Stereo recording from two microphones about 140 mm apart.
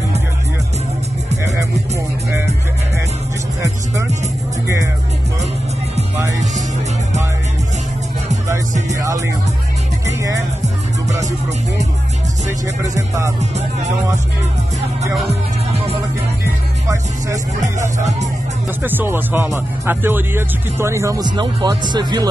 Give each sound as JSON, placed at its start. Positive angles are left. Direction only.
{"t": 8.9, "sound": "music", "side_deg": -20}
{"t": 10.6, "sound": "music", "side_deg": -55}
{"t": 12.8, "sound": "music", "side_deg": -25}
{"t": 13.4, "sound": "music", "side_deg": -55}
{"t": 18.8, "sound": "speech", "side_deg": -15}
{"t": 21.4, "sound": "speech", "side_deg": -35}